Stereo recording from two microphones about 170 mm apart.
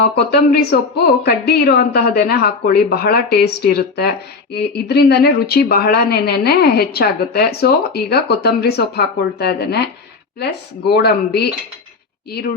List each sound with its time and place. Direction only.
0.0 s a woman's voice: 75° left (ahead or behind)